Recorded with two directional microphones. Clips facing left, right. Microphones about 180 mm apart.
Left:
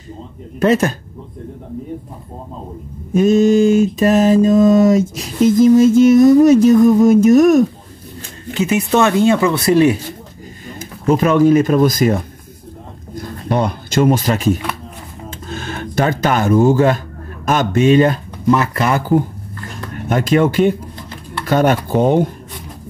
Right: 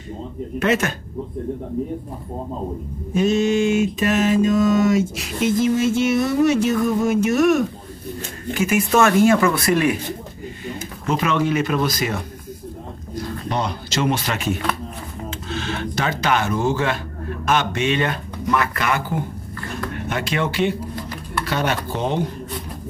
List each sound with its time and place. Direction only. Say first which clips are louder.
0.6 s mantra: left 6 dB; 35° left (ahead or behind)
3.2 s mantra: left 7 dB; 45° left (ahead or behind)
8.5 s speech: left 3 dB; 20° left (ahead or behind)
10.7 s speech: left 8 dB; 45° left (ahead or behind)
17.5 s mantra: left 8 dB; 40° left (ahead or behind)
19.9 s speech: left 11 dB; 45° left (ahead or behind)